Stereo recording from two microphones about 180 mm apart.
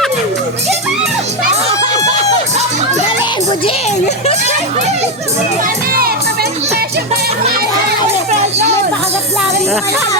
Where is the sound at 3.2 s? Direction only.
30° left (ahead or behind).